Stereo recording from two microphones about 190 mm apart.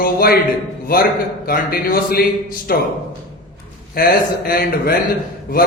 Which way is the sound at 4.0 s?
50° left (ahead or behind).